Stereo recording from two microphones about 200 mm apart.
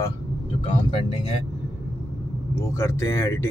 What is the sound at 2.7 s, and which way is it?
Speech, 15° left (ahead or behind).